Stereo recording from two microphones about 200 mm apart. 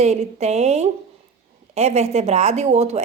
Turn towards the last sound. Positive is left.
turn(degrees=-35)  # may be behind; listen again after turning